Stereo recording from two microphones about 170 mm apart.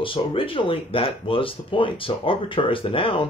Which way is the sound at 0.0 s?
30° left (ahead or behind).